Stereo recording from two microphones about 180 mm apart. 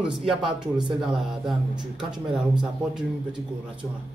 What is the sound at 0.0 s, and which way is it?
Speech, 5° right (ahead or behind).